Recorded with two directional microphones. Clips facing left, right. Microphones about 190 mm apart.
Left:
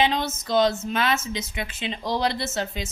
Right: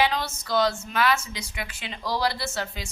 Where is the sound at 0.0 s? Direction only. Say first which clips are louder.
Left 2 dB; 20° left (ahead or behind).